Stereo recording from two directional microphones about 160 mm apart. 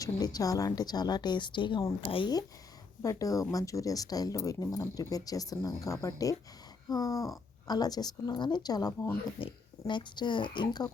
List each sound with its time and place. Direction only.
0.0 s speech: 25° left (ahead or behind)